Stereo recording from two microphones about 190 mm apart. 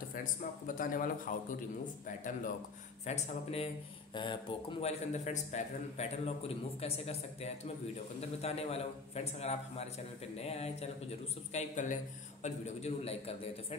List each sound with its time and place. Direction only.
0.1 s speech: 45° left (ahead or behind)